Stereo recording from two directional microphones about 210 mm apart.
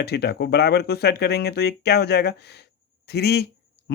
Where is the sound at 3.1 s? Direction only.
50° left (ahead or behind).